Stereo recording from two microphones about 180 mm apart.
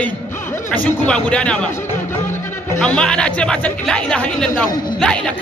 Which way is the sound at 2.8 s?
5° left (ahead or behind).